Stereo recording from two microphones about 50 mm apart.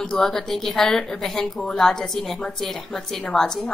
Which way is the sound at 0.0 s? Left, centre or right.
Centre.